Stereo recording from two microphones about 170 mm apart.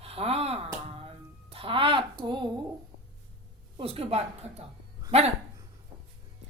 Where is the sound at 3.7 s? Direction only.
35° right (ahead or behind).